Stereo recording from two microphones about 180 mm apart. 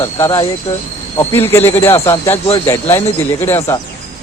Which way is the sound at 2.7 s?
15° left (ahead or behind).